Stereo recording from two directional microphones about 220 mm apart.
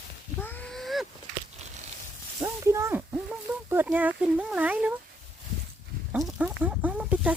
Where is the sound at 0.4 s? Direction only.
5° left (ahead or behind).